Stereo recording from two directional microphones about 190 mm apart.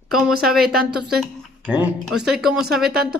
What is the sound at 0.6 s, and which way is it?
Speech, 55° right (ahead or behind).